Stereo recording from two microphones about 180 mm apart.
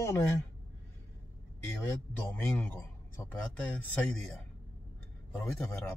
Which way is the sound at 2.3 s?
10° left (ahead or behind).